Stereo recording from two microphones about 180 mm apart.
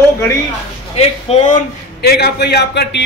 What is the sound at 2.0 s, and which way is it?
Speech, 60° left (ahead or behind).